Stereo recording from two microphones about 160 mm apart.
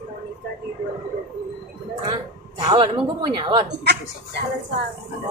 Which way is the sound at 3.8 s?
90° right.